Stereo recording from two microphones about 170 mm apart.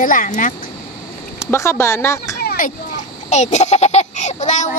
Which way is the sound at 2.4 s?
50° left (ahead or behind).